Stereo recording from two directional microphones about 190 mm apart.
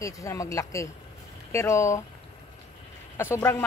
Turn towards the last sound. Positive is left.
turn(degrees=10)  # may be behind; listen again after turning